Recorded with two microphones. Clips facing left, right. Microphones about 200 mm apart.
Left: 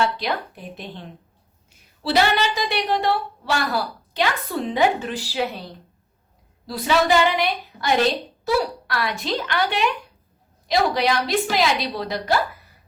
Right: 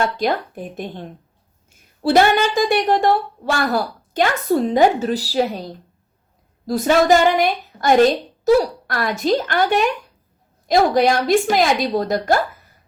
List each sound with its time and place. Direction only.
0.0 s a woman's voice: 45° right (ahead or behind)